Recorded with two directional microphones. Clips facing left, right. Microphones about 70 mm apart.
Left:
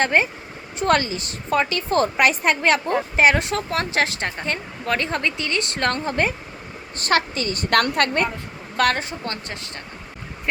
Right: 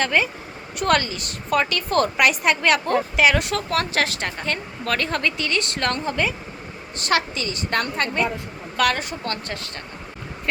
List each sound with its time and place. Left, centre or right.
0.0 s a woman's voice: left
7.7 s a woman's voice: left
8.7 s a woman's voice: left